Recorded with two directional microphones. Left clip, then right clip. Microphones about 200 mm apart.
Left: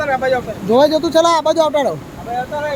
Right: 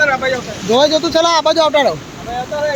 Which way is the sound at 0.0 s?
55° left (ahead or behind).